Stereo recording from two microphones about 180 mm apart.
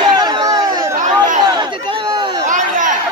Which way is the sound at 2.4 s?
45° right (ahead or behind).